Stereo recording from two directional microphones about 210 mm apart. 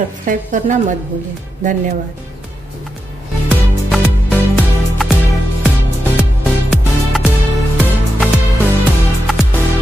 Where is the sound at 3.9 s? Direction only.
Centre (ahead or behind).